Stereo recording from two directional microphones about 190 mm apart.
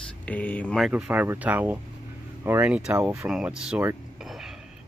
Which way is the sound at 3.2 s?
5° right (ahead or behind).